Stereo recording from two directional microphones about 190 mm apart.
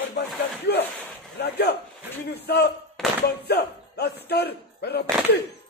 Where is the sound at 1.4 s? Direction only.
60° left (ahead or behind).